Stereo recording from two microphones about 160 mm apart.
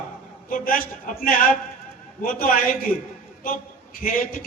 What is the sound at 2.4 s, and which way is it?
A man's voice, 60° left (ahead or behind).